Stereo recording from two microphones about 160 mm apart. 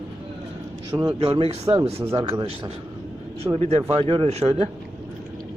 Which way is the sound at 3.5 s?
40° right (ahead or behind).